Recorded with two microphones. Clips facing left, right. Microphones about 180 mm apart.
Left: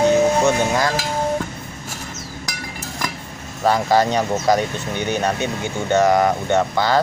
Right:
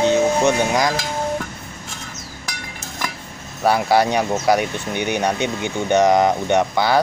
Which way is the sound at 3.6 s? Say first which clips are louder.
Even; 10° right (ahead or behind).